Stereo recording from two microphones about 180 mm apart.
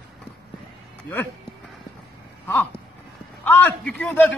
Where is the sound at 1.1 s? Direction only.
10° left (ahead or behind).